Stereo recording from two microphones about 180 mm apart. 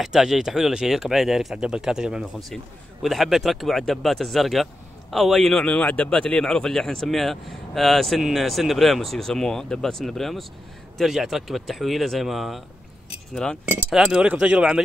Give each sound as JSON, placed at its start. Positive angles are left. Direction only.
{"t": 0.0, "sound": "a man's voice", "side_deg": -5}